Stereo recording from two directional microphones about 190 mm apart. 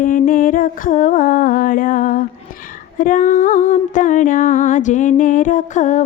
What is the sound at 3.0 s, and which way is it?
Music, 45° left (ahead or behind).